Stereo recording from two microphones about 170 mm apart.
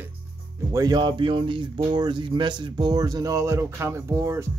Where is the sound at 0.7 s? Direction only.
25° right (ahead or behind).